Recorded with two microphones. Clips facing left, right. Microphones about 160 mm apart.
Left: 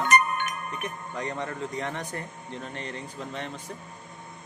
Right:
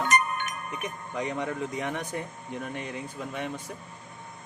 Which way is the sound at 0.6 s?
15° right (ahead or behind).